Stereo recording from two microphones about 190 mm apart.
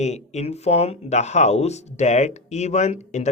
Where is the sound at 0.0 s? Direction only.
35° left (ahead or behind).